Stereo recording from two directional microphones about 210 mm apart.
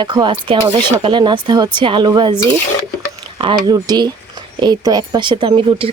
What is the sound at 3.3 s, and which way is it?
Speech, 20° right (ahead or behind).